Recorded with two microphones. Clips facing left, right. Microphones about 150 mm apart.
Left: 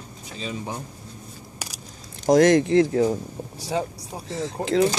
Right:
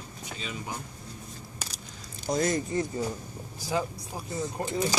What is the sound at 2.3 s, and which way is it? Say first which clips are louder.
Speech: left 12 dB; 90° left.